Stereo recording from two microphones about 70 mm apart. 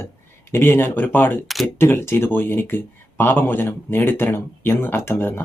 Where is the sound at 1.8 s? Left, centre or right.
Left.